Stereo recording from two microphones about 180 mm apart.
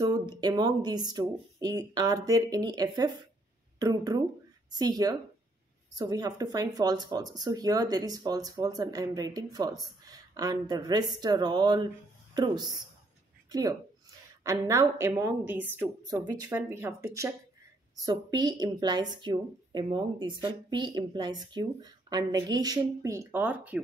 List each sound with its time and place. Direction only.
0.0 s a woman's voice: 25° right (ahead or behind)
16.4 s a woman's voice: 10° right (ahead or behind)